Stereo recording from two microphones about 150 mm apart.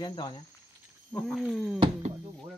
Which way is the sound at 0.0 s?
30° left (ahead or behind).